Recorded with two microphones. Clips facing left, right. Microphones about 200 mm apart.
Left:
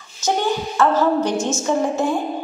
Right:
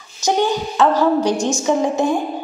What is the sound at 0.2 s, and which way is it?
A woman's voice, 15° right (ahead or behind).